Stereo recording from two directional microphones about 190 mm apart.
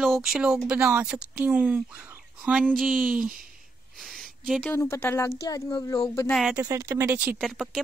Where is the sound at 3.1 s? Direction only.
45° right (ahead or behind).